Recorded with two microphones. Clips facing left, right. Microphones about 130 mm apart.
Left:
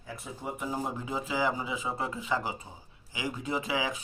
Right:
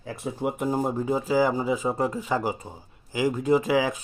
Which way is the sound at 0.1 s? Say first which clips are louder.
Right 9 dB; 70° right (ahead or behind).